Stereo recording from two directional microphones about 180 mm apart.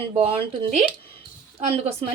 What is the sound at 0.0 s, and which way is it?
A woman's voice, 30° right (ahead or behind).